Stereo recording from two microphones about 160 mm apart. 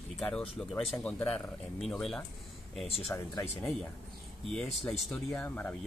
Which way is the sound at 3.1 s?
15° left (ahead or behind).